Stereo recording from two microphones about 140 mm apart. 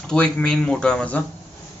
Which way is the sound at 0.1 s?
5° left (ahead or behind).